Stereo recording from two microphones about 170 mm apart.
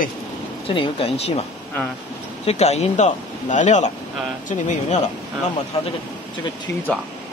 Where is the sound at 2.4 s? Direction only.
40° left (ahead or behind).